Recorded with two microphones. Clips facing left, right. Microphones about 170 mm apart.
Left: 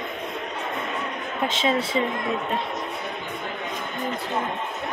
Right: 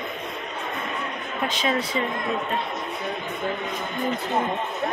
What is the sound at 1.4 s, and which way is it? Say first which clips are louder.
Speech: left 2 dB; 25° left (ahead or behind).